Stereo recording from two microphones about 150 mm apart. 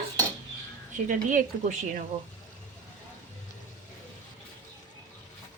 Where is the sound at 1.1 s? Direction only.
60° right (ahead or behind).